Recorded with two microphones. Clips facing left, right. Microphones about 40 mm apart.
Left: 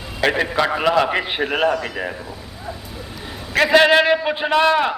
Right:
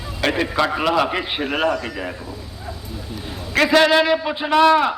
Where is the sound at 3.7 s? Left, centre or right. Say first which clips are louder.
Left 2 dB; centre.